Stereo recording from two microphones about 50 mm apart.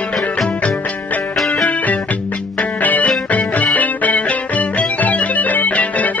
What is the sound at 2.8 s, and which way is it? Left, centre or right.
Music, left.